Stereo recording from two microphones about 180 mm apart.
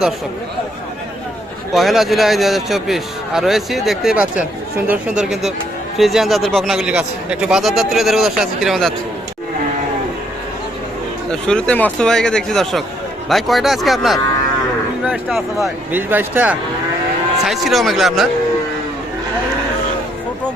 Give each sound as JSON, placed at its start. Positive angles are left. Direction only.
{"t": 1.7, "sound": "speech", "side_deg": 0}
{"t": 11.3, "sound": "speech", "side_deg": 5}